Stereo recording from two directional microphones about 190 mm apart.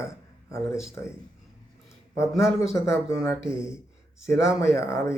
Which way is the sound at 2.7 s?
15° left (ahead or behind).